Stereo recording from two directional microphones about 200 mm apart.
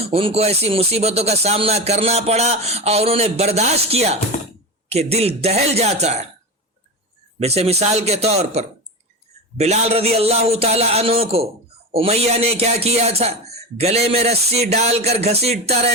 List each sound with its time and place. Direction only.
0.0 s speech: 30° right (ahead or behind)
7.3 s speech: 30° right (ahead or behind)